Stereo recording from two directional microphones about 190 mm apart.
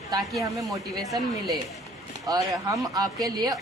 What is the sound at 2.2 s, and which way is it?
Speech, 20° right (ahead or behind).